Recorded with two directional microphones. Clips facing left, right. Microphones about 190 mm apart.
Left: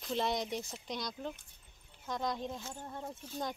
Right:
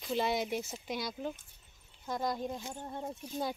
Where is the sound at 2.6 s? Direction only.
15° right (ahead or behind).